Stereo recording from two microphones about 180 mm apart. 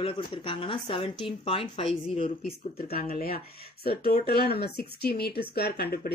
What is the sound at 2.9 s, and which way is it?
Speech, 55° left (ahead or behind).